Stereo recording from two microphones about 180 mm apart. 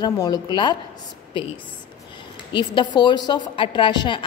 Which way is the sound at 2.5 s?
25° left (ahead or behind).